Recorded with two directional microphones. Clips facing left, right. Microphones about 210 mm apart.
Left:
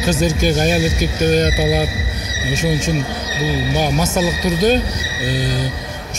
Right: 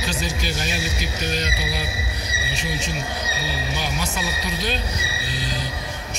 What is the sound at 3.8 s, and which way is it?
Speech, 45° left (ahead or behind).